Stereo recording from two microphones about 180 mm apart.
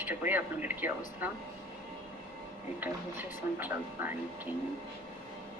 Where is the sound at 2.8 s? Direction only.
10° right (ahead or behind).